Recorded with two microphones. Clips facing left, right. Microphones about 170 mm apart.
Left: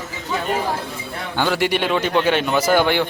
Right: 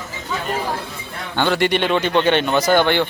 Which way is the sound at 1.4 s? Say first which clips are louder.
Right 2 dB; 5° left (ahead or behind).